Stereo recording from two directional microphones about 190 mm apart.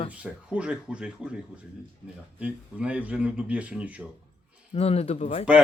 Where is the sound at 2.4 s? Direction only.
5° right (ahead or behind).